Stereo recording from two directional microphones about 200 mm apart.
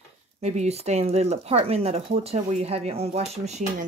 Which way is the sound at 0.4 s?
35° right (ahead or behind).